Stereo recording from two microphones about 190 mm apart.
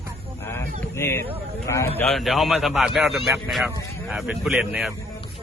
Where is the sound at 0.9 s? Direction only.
15° left (ahead or behind).